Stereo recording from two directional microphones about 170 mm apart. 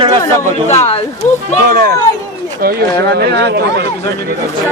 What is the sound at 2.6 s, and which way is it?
Speech, 60° right (ahead or behind).